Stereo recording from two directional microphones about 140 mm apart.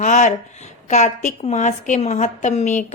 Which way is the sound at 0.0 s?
60° left (ahead or behind).